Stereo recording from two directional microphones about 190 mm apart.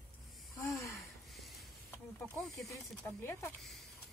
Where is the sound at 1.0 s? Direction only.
Centre (ahead or behind).